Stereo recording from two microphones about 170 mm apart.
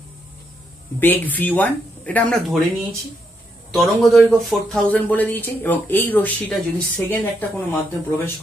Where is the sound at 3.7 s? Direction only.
Centre (ahead or behind).